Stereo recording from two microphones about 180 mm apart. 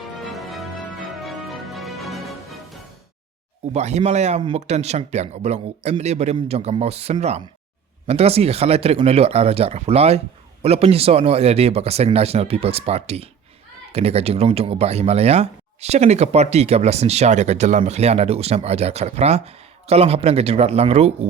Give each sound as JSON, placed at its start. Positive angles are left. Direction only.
{"t": 0.3, "sound": "music", "side_deg": 0}
{"t": 3.7, "sound": "speech", "side_deg": -40}